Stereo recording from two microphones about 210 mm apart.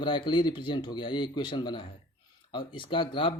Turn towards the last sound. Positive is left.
turn(degrees=20)  # may be behind; listen again after turning